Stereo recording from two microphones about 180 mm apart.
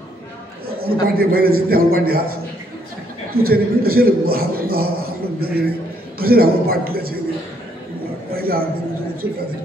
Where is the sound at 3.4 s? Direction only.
55° right (ahead or behind).